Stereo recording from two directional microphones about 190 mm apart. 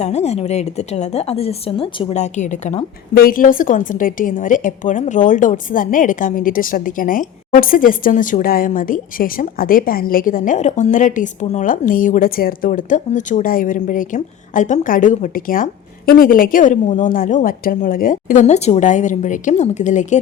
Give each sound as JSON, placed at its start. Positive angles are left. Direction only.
{"t": 0.0, "sound": "a woman's voice", "side_deg": 35}